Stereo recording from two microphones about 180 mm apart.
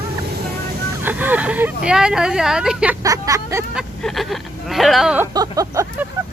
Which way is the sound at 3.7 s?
Centre (ahead or behind).